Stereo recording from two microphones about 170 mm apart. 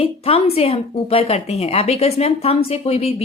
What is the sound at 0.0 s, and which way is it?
A woman's voice, 35° left (ahead or behind).